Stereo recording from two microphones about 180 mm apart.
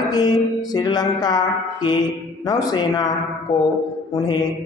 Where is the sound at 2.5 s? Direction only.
20° left (ahead or behind).